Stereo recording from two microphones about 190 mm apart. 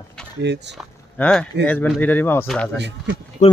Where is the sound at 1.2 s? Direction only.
10° left (ahead or behind).